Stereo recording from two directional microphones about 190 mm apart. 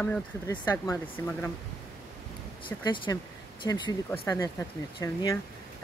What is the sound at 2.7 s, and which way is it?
Speech, 25° left (ahead or behind).